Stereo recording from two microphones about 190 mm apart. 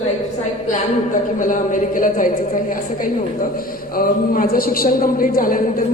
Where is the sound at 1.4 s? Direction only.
45° left (ahead or behind).